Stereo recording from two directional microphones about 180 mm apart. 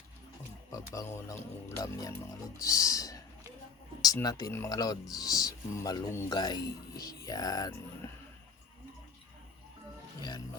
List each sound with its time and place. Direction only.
0.7 s speech: 15° left (ahead or behind)
2.6 s a sound: 20° left (ahead or behind)
4.0 s speech: 20° left (ahead or behind)
10.2 s music: 25° left (ahead or behind)